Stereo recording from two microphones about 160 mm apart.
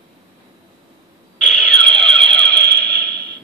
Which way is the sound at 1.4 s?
5° left (ahead or behind).